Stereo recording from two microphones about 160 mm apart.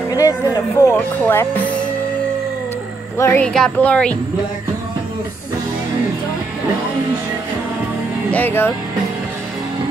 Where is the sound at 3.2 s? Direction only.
10° left (ahead or behind).